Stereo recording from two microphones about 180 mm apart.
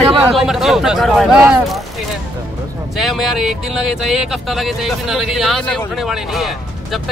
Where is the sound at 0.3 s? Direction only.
Centre (ahead or behind).